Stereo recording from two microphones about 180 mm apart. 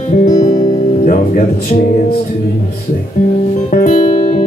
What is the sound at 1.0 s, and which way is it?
Speech, 45° left (ahead or behind).